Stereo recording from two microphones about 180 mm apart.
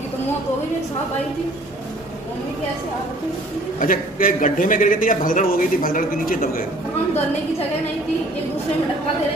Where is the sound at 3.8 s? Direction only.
50° left (ahead or behind).